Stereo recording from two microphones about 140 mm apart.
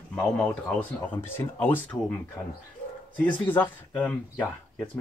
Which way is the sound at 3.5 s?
10° left (ahead or behind).